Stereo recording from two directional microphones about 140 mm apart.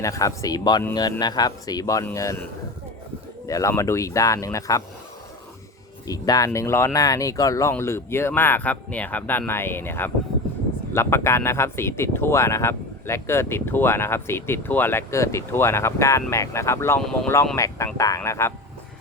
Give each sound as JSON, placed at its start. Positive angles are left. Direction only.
{"t": 0.0, "sound": "speech", "side_deg": 25}
{"t": 3.4, "sound": "speech", "side_deg": 25}
{"t": 6.1, "sound": "speech", "side_deg": 25}